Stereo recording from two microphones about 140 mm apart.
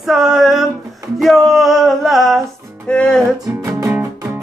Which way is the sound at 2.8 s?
5° left (ahead or behind).